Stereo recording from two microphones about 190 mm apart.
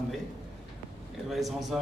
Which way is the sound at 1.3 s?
Centre (ahead or behind).